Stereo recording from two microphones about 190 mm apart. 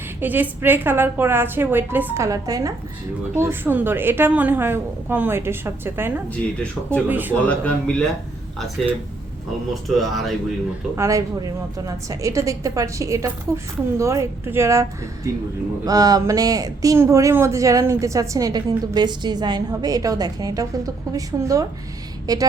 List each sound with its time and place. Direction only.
0.2 s a woman's voice: 10° right (ahead or behind)
6.3 s speech: 5° left (ahead or behind)
7.1 s a woman's voice: 10° right (ahead or behind)
7.4 s speech: 5° left (ahead or behind)
10.0 s speech: centre (ahead or behind)
10.9 s a woman's voice: 15° right (ahead or behind)